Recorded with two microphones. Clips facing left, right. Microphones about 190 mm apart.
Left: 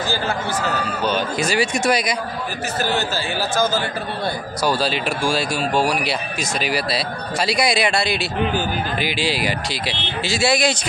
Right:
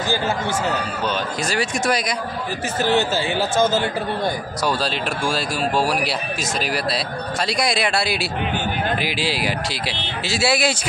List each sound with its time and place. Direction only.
1.0 s speech: centre (ahead or behind)
2.8 s speech: 25° right (ahead or behind)
4.6 s speech: centre (ahead or behind)